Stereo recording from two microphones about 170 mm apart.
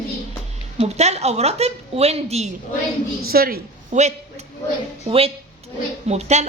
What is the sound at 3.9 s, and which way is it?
Speech, 45° right (ahead or behind).